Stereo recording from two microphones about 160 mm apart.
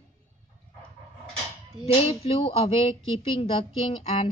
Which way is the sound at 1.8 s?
40° left (ahead or behind).